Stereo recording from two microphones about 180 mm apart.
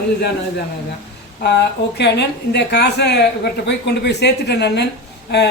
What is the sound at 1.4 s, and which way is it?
Speech, 70° left (ahead or behind).